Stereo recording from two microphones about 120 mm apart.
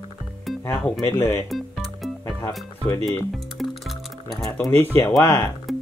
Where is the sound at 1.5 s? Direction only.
Centre (ahead or behind).